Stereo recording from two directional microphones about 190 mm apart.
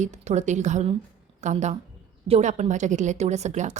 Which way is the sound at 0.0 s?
40° right (ahead or behind).